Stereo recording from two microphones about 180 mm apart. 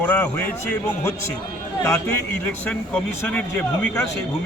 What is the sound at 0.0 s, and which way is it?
A man's voice, 10° left (ahead or behind).